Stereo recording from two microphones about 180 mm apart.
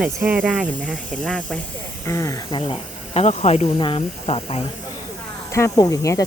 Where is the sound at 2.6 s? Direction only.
30° left (ahead or behind).